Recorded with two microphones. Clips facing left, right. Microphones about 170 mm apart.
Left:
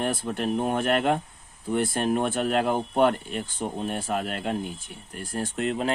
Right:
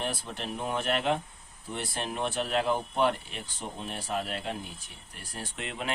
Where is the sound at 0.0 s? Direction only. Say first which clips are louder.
Left 8 dB; 50° left (ahead or behind).